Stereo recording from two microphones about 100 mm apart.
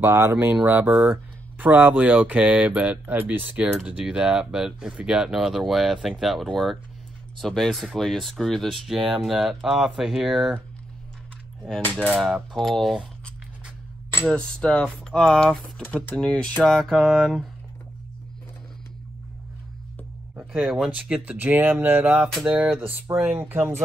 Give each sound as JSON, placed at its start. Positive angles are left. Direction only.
{"t": 0.0, "sound": "speech", "side_deg": -25}
{"t": 11.8, "sound": "speech", "side_deg": 15}
{"t": 12.5, "sound": "speech", "side_deg": 0}
{"t": 14.3, "sound": "speech", "side_deg": 10}
{"t": 20.8, "sound": "speech", "side_deg": -10}
{"t": 22.1, "sound": "speech", "side_deg": -5}
{"t": 23.1, "sound": "speech", "side_deg": -20}